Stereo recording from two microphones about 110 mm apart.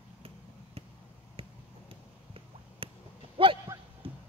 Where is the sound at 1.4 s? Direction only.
60° right (ahead or behind).